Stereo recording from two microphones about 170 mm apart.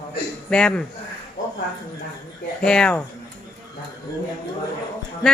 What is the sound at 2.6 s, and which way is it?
Speech, 5° left (ahead or behind).